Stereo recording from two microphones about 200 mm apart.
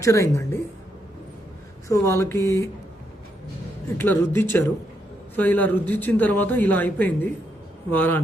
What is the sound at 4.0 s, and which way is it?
Speech, 10° left (ahead or behind).